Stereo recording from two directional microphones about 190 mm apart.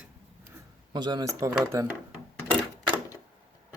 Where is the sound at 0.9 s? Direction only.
20° right (ahead or behind).